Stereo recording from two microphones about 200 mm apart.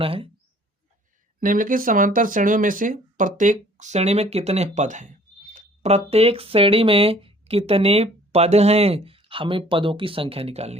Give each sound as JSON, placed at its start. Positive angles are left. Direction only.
{"t": 0.0, "sound": "speech", "side_deg": -25}
{"t": 1.4, "sound": "speech", "side_deg": -45}